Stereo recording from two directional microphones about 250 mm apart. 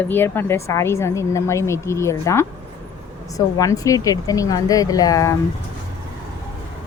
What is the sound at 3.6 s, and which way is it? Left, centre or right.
A woman's voice, centre.